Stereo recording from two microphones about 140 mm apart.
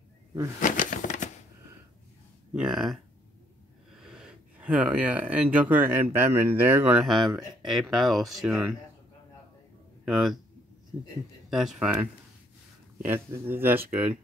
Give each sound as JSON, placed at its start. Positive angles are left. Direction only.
{"t": 0.6, "sound": "a sound", "side_deg": 70}
{"t": 2.5, "sound": "speech", "side_deg": -5}
{"t": 4.0, "sound": "speech", "side_deg": -5}
{"t": 10.0, "sound": "speech", "side_deg": 0}
{"t": 11.5, "sound": "speech", "side_deg": 0}